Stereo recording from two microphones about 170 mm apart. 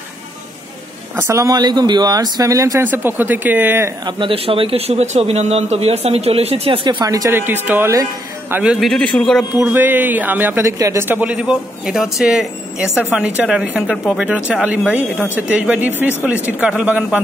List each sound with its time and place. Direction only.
1.1 s speech: 20° right (ahead or behind)
4.2 s a man's voice: 30° right (ahead or behind); by 8.7 s 10° right (ahead or behind)
8.7 s speech: centre (ahead or behind)
9.6 s a man's voice: 10° right (ahead or behind)